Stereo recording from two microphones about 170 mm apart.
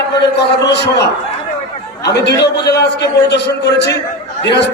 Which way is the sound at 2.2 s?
80° left.